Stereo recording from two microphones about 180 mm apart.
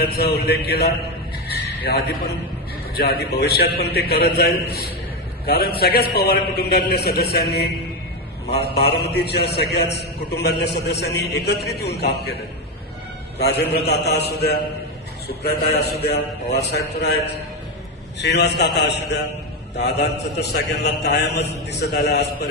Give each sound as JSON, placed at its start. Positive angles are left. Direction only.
{"t": 0.0, "sound": "a man's voice", "side_deg": 65}
{"t": 1.5, "sound": "a sound", "side_deg": 60}
{"t": 2.9, "sound": "a man's voice", "side_deg": 60}
{"t": 8.4, "sound": "a man's voice", "side_deg": 65}
{"t": 13.4, "sound": "a man's voice", "side_deg": 65}
{"t": 18.2, "sound": "a man's voice", "side_deg": 70}